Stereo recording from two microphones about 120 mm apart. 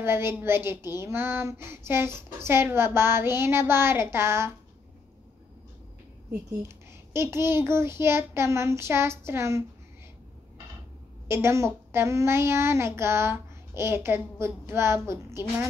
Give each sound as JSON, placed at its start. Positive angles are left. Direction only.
{"t": 0.0, "sound": "a child's voice", "side_deg": -20}
{"t": 6.6, "sound": "a child's voice", "side_deg": -20}
{"t": 11.2, "sound": "a child's voice", "side_deg": -20}